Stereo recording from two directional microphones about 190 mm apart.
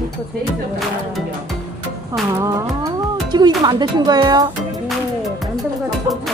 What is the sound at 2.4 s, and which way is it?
Music, 15° right (ahead or behind).